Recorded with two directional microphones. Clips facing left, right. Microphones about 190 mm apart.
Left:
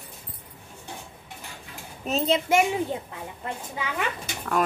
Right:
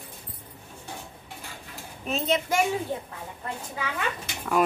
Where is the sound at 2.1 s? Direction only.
35° left (ahead or behind).